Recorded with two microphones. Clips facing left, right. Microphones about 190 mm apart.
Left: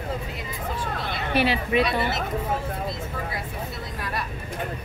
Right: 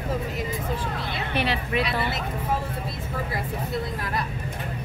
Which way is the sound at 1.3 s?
5° left (ahead or behind).